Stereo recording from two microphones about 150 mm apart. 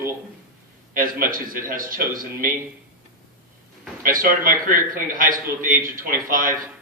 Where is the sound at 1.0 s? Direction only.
70° right (ahead or behind).